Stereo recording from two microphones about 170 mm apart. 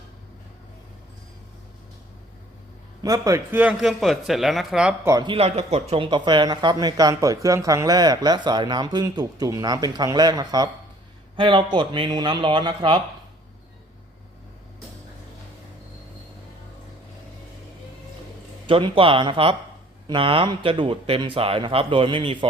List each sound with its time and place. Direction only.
3.0 s speech: 20° right (ahead or behind); by 4.9 s 5° right (ahead or behind)
5.0 s speech: 25° right (ahead or behind)
18.6 s speech: 30° right (ahead or behind)